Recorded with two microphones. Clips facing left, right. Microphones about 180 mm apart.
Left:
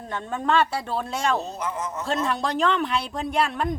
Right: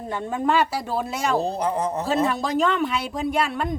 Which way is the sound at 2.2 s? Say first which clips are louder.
Left 1 dB; centre (ahead or behind).